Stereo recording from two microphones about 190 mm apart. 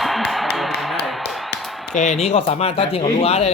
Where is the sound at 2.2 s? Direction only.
35° left (ahead or behind).